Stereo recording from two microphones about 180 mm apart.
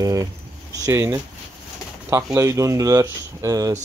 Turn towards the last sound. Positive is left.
turn(degrees=-20)  # may be behind; listen again after turning